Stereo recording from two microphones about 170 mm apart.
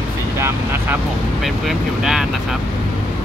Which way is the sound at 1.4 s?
Centre (ahead or behind).